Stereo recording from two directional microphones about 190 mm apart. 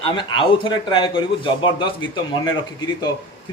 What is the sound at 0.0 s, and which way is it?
A man's voice, 25° left (ahead or behind).